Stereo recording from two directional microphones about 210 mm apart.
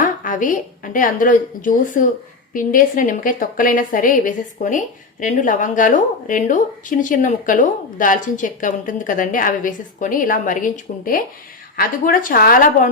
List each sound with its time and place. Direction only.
0.0 s a woman's voice: 40° left (ahead or behind)